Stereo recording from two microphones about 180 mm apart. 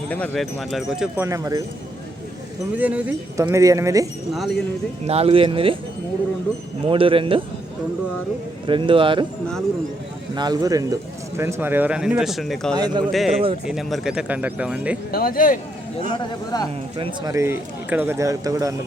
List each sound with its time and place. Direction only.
0.1 s speech: 5° left (ahead or behind); by 1.6 s 20° right (ahead or behind)
2.7 s speech: 10° right (ahead or behind)
5.0 s speech: 35° right (ahead or behind)
6.8 s speech: 30° right (ahead or behind)
8.6 s speech: 25° right (ahead or behind)
10.3 s speech: 20° right (ahead or behind); by 12.7 s centre (ahead or behind)
12.7 s speech: 25° right (ahead or behind)
13.1 s speech: centre (ahead or behind)
15.1 s speech: 55° left (ahead or behind)
16.1 s a man's voice: 20° left (ahead or behind)
17.0 s speech: 20° right (ahead or behind)